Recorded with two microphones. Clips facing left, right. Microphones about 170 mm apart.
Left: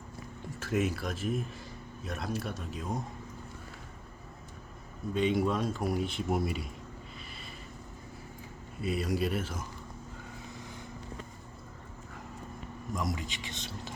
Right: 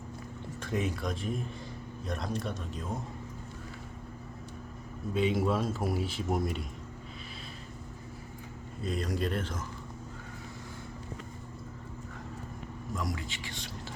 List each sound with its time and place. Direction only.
0.6 s a man's voice: 5° left (ahead or behind)
5.1 s a man's voice: 5° right (ahead or behind)
8.8 s speech: 10° left (ahead or behind)
13.0 s a man's voice: 20° left (ahead or behind)